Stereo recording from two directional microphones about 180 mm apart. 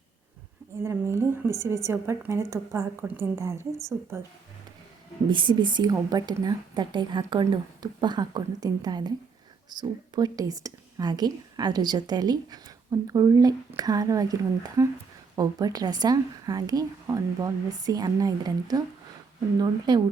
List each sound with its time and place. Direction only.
0.8 s a woman's voice: 15° right (ahead or behind)
5.3 s speech: 25° right (ahead or behind)